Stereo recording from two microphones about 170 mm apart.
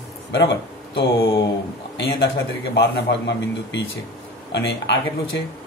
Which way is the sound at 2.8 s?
85° left.